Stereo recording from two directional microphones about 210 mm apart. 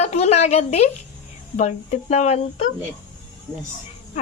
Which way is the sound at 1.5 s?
35° left (ahead or behind).